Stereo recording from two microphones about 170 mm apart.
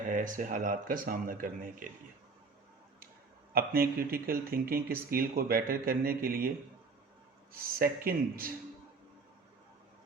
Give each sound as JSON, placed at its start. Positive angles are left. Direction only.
{"t": 0.1, "sound": "speech", "side_deg": -50}
{"t": 3.5, "sound": "speech", "side_deg": -60}
{"t": 7.5, "sound": "speech", "side_deg": -60}